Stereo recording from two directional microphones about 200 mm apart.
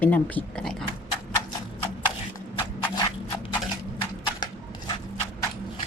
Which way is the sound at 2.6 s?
20° left (ahead or behind).